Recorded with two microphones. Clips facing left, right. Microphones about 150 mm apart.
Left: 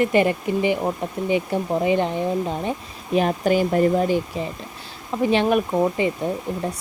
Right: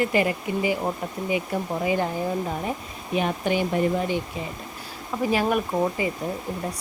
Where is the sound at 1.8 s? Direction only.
25° left (ahead or behind).